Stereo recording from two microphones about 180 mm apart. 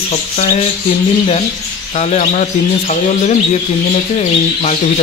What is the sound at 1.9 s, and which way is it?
Speech, 40° left (ahead or behind).